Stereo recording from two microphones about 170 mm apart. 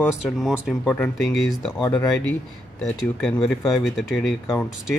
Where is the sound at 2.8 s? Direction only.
5° left (ahead or behind).